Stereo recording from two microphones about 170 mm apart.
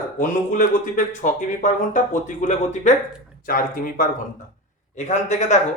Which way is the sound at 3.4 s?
55° left (ahead or behind).